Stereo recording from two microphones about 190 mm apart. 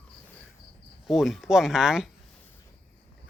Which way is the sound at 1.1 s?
Centre (ahead or behind).